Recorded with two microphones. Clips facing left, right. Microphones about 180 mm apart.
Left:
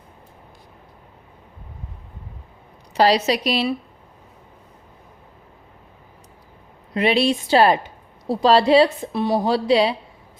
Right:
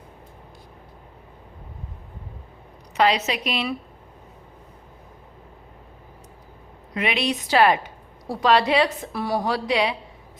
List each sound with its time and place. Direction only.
2.9 s a woman's voice: 35° left (ahead or behind)
6.9 s a woman's voice: 30° left (ahead or behind)